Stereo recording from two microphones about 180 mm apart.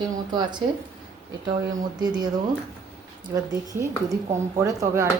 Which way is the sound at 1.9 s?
25° right (ahead or behind).